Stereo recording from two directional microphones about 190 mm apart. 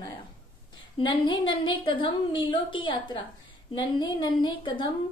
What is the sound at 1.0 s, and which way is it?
A woman's voice, 25° left (ahead or behind).